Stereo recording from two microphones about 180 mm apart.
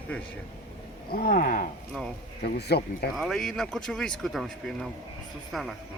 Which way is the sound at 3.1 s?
Centre (ahead or behind).